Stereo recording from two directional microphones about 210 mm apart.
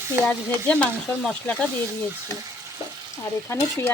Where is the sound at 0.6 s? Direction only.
5° left (ahead or behind).